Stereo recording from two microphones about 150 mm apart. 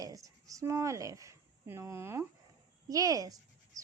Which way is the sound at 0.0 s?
20° right (ahead or behind).